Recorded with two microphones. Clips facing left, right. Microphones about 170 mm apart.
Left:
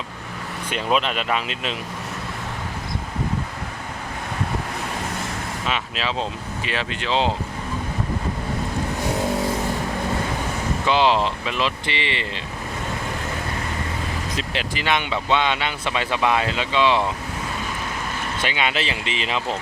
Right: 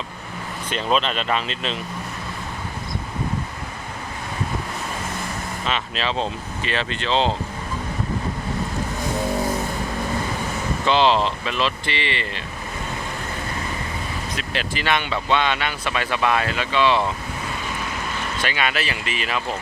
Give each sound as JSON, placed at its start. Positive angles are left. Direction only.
{"t": 0.7, "sound": "speech", "side_deg": 10}
{"t": 5.6, "sound": "speech", "side_deg": 10}
{"t": 10.8, "sound": "speech", "side_deg": 10}
{"t": 14.5, "sound": "speech", "side_deg": 15}
{"t": 18.4, "sound": "speech", "side_deg": 20}